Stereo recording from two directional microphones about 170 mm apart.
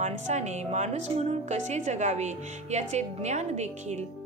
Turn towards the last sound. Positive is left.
turn(degrees=-40)  # may be behind; listen again after turning